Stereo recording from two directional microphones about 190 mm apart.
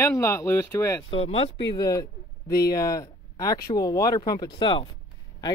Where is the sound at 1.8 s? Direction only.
20° left (ahead or behind).